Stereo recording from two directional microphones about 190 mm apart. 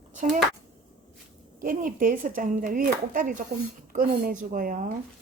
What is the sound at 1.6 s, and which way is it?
Speech, 45° right (ahead or behind).